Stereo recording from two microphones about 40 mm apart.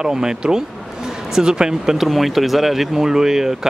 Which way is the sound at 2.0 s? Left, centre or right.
Centre.